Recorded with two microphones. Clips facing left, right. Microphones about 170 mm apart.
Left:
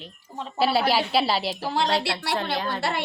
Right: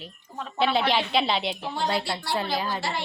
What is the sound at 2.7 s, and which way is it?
Speech, 60° left (ahead or behind).